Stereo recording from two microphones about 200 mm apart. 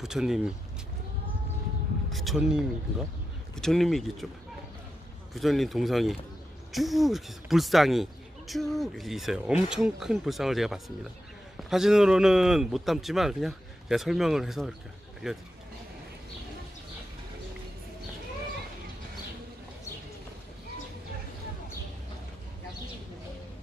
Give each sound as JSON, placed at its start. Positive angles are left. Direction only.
{"t": 0.0, "sound": "speech", "side_deg": 0}
{"t": 2.0, "sound": "speech", "side_deg": 0}
{"t": 5.3, "sound": "speech", "side_deg": 0}